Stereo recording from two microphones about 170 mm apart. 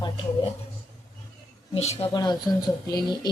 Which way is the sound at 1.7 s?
40° left (ahead or behind).